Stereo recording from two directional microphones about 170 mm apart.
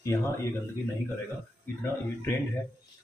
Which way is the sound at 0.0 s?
15° left (ahead or behind).